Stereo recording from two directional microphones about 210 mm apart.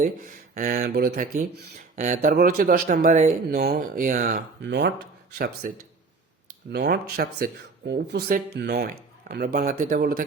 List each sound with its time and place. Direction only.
0.0 s speech: 40° right (ahead or behind)
4.6 s speech: 55° right (ahead or behind)
6.7 s speech: 50° right (ahead or behind)